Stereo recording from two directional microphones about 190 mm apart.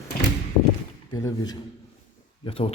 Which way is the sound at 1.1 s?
20° left (ahead or behind).